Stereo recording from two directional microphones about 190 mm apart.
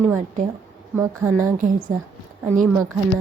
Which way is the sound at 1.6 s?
45° right (ahead or behind).